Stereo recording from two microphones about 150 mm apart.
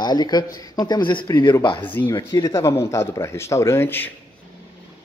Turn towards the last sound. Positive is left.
turn(degrees=15)  # may be behind; listen again after turning